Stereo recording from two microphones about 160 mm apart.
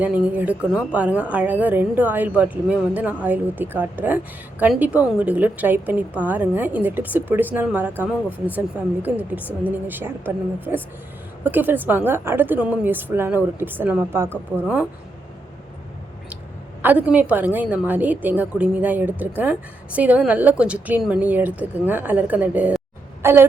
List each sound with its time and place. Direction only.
0.0 s a woman's voice: 10° right (ahead or behind)
16.8 s a woman's voice: 10° right (ahead or behind)